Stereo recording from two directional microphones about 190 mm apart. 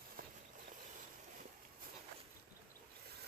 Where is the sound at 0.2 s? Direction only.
50° right (ahead or behind).